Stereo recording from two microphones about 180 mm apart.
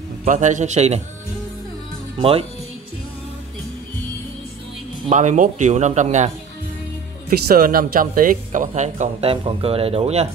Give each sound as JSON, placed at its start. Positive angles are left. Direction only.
{"t": 0.2, "sound": "speech", "side_deg": -45}
{"t": 5.1, "sound": "speech", "side_deg": -45}
{"t": 7.2, "sound": "speech", "side_deg": -55}